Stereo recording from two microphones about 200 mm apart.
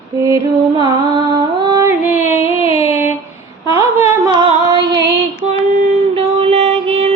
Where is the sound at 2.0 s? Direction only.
10° right (ahead or behind).